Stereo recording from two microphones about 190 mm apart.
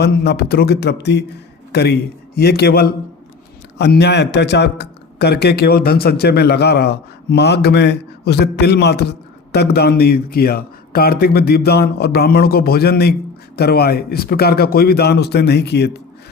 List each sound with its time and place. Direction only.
0.0 s a man's voice: 60° left (ahead or behind)